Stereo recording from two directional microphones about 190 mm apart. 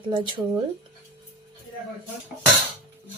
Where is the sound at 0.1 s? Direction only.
25° right (ahead or behind).